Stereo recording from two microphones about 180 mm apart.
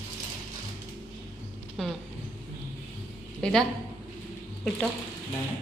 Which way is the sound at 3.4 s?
5° left (ahead or behind).